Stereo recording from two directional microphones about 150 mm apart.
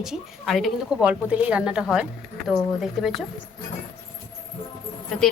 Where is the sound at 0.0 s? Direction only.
Centre (ahead or behind).